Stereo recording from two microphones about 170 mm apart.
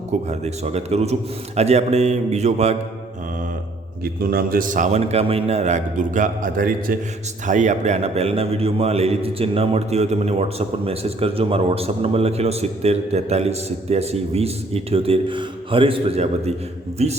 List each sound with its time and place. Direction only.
0.3 s a man's voice: 40° right (ahead or behind)
4.0 s a man's voice: 60° right (ahead or behind)
7.4 s a man's voice: 45° right (ahead or behind)